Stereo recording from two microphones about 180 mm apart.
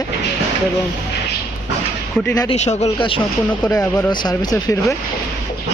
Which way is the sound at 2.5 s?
35° left (ahead or behind).